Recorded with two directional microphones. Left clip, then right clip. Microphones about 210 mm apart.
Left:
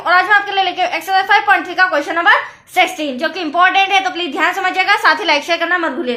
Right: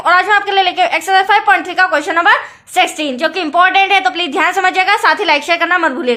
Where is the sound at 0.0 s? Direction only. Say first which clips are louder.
Right 1 dB; 35° right (ahead or behind).